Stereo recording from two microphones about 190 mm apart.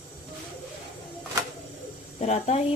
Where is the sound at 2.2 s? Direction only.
35° left (ahead or behind).